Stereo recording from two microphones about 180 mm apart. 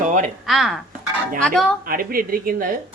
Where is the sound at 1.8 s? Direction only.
50° right (ahead or behind).